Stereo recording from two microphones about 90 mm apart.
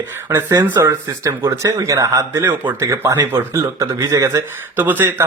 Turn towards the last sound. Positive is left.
turn(degrees=-25)  # may be behind; listen again after turning